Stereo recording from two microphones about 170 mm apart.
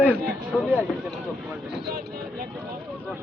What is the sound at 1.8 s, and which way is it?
Vehicle, 65° right (ahead or behind).